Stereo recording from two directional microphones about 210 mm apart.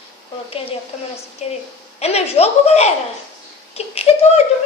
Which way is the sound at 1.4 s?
30° left (ahead or behind).